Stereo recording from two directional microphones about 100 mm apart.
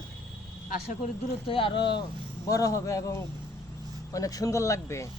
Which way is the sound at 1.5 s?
60° left (ahead or behind).